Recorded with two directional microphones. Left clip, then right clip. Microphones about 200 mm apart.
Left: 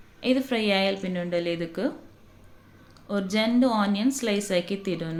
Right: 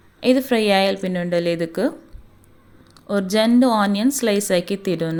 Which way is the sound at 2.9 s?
40° right (ahead or behind).